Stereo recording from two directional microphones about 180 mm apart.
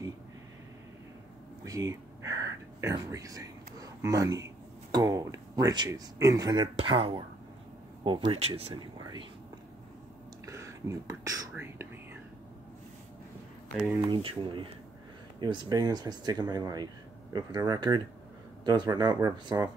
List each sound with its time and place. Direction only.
1.6 s a sound: 15° right (ahead or behind)
4.9 s speech: 20° right (ahead or behind)
8.3 s speech: 35° right (ahead or behind)
10.4 s whispering: 15° right (ahead or behind)
14.0 s speech: 25° right (ahead or behind)